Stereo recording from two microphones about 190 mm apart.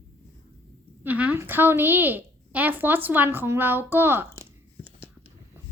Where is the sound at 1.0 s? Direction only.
10° right (ahead or behind).